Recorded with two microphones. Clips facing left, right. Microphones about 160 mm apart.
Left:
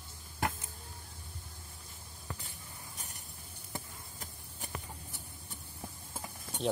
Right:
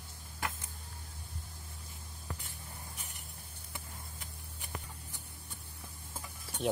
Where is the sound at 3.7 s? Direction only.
40° left (ahead or behind).